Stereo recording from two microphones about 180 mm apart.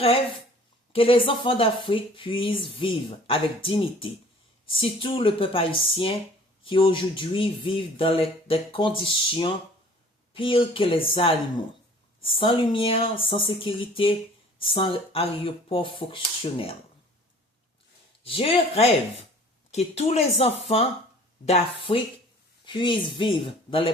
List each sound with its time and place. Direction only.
0.9 s speech: 30° left (ahead or behind)
18.2 s speech: 30° left (ahead or behind)